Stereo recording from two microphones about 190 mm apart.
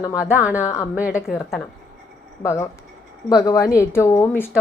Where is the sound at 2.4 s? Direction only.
15° left (ahead or behind).